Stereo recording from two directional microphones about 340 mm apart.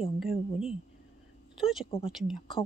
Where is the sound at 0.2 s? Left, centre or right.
Centre.